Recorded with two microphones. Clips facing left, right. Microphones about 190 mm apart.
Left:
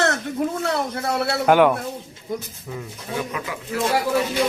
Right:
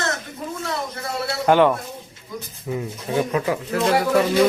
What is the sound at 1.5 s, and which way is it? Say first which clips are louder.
Speech: even; 5° left (ahead or behind).